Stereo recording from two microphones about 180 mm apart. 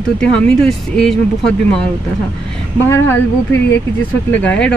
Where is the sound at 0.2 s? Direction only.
5° left (ahead or behind).